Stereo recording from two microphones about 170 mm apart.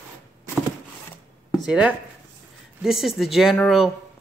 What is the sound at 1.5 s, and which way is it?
Chopping, 5° right (ahead or behind).